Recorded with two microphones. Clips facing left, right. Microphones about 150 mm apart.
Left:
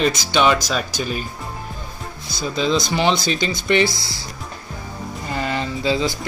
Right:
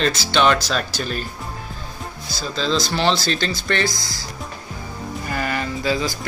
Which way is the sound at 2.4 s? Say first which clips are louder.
Left 2 dB; 15° left (ahead or behind).